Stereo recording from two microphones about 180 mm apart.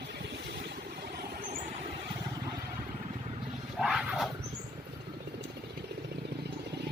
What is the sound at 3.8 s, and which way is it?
Vehicle, centre (ahead or behind).